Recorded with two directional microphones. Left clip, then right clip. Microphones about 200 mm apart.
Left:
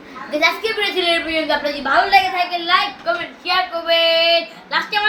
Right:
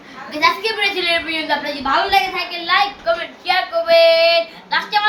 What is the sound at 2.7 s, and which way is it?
Child singing, 20° right (ahead or behind).